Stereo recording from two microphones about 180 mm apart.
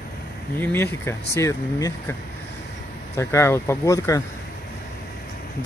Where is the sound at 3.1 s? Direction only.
15° left (ahead or behind).